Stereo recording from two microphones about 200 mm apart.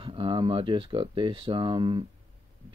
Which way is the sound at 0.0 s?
25° right (ahead or behind).